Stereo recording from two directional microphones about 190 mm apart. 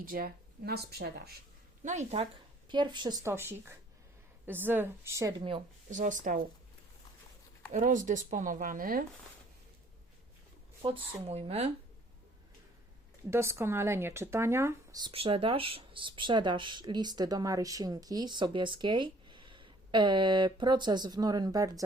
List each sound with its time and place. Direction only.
0.0 s speech: 50° right (ahead or behind)
1.8 s speech: 40° right (ahead or behind)
2.6 s speech: 25° right (ahead or behind)
5.9 s speech: 40° right (ahead or behind)
7.7 s speech: 40° right (ahead or behind)
10.8 s speech: 30° right (ahead or behind)
13.3 s speech: 15° right (ahead or behind)